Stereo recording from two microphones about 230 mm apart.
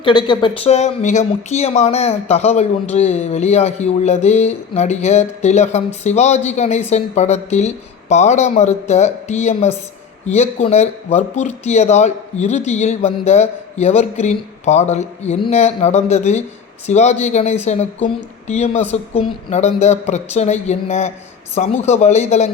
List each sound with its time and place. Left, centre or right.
0.0 s speech: centre